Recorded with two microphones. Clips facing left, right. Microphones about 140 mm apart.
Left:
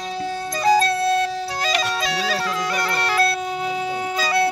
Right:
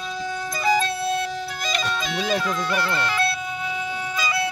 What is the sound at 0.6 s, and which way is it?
Music, 35° left (ahead or behind).